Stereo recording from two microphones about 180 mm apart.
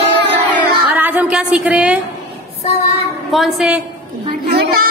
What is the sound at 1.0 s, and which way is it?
A woman's voice, 10° right (ahead or behind).